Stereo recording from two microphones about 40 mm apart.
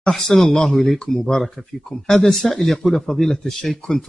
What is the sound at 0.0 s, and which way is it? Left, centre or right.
Speech, centre.